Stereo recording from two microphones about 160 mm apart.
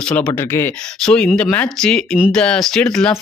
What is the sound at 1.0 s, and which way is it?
Speech, 5° left (ahead or behind).